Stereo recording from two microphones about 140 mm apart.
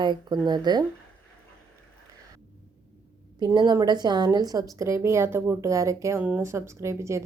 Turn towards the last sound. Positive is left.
turn(degrees=-20)  # may be behind; listen again after turning